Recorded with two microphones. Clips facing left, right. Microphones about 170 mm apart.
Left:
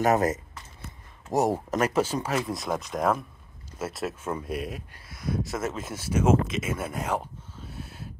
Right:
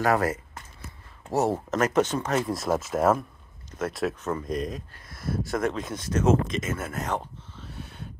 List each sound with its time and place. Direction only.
0.0 s speech: 20° left (ahead or behind); by 8.1 s 5° left (ahead or behind)